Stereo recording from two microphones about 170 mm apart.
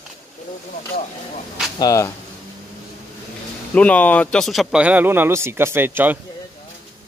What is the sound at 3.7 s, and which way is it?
Speech, 10° left (ahead or behind).